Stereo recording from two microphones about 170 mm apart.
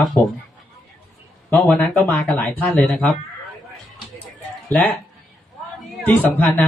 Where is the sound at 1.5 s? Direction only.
5° left (ahead or behind).